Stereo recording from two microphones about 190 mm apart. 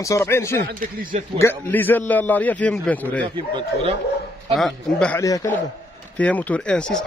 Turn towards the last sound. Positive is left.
turn(degrees=5)  # may be behind; listen again after turning